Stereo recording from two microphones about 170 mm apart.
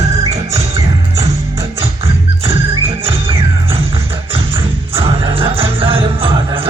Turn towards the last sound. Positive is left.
turn(degrees=-30)  # may be behind; listen again after turning